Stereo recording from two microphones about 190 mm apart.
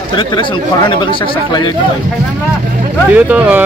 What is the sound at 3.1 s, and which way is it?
Speech, 10° right (ahead or behind).